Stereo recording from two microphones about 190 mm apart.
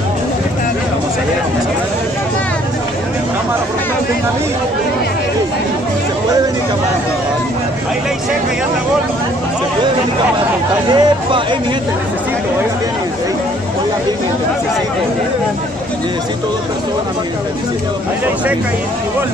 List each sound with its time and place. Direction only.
10.9 s speech: 20° right (ahead or behind)